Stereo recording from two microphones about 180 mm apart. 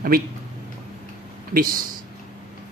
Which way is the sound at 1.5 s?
55° right (ahead or behind).